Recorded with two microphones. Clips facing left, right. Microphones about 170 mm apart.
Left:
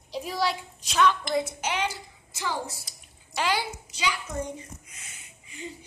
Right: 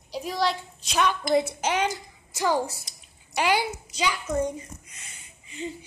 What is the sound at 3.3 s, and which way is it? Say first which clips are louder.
Speech: right 4 dB; 15° right (ahead or behind).